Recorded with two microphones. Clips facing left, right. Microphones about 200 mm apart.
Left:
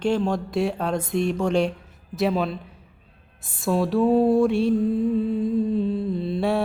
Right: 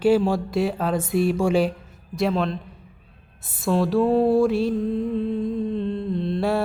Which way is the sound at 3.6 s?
Centre (ahead or behind).